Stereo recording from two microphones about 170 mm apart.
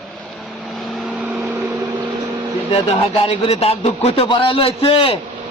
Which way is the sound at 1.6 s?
20° right (ahead or behind).